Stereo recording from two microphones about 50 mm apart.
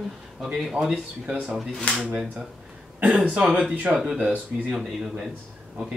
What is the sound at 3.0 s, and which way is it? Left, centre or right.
Speech, centre.